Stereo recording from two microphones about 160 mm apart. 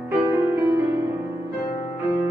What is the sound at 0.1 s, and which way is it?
Music, 15° right (ahead or behind).